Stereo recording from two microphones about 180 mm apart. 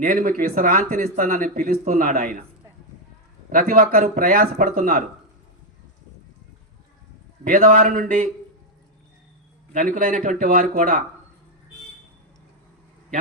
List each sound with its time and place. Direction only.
0.0 s speech: 50° right (ahead or behind)
3.5 s speech: 50° right (ahead or behind)
7.4 s speech: 45° right (ahead or behind)
9.7 s speech: 45° right (ahead or behind)